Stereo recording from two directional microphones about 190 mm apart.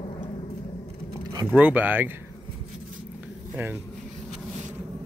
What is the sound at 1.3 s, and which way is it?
Speech, 10° right (ahead or behind).